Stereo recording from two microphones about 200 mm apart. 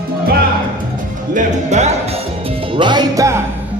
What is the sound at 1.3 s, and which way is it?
Music, 35° right (ahead or behind).